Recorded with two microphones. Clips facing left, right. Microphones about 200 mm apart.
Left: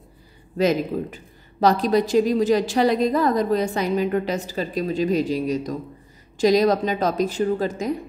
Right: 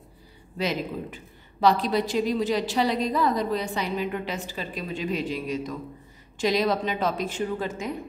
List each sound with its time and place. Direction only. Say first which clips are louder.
0.6 s a woman's voice: left 8 dB; 45° left (ahead or behind)